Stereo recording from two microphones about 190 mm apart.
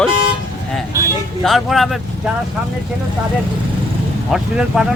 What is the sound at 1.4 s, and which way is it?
Speech, centre (ahead or behind).